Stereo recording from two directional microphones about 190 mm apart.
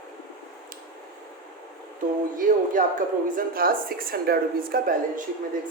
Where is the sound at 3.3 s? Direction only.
50° right (ahead or behind).